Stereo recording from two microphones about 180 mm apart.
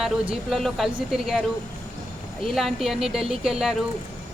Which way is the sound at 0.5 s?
Centre (ahead or behind).